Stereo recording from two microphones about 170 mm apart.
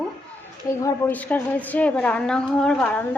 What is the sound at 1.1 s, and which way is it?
A woman's voice, 10° left (ahead or behind).